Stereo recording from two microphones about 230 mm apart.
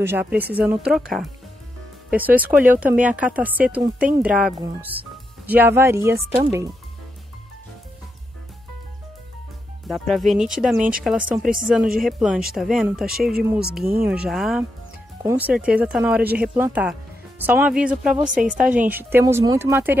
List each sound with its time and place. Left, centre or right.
0.0 s speech: centre
9.8 s speech: centre
10.8 s a woman's voice: right
11.1 s speech: centre